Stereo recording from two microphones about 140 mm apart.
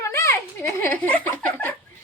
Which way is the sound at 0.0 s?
20° left (ahead or behind).